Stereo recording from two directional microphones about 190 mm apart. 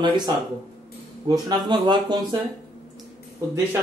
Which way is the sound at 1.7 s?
25° right (ahead or behind).